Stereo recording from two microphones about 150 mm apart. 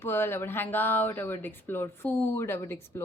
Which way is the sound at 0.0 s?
15° left (ahead or behind).